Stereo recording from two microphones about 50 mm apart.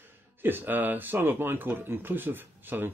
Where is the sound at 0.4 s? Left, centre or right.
Right.